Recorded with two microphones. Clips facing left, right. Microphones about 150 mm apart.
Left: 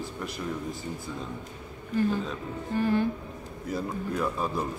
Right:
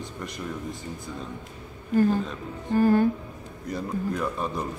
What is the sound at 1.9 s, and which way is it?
Speech, 45° right (ahead or behind).